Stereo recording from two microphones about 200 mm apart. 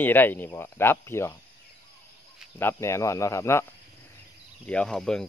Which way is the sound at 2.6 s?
15° left (ahead or behind).